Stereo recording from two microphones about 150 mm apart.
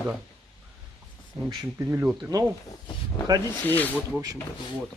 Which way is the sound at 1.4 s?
15° right (ahead or behind).